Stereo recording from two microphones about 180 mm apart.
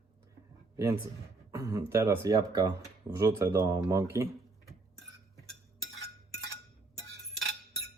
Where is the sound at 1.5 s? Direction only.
15° right (ahead or behind).